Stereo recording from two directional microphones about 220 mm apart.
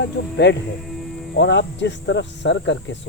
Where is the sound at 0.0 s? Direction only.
50° left (ahead or behind).